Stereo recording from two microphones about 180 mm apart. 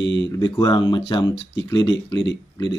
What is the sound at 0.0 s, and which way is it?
Speech, 90° left.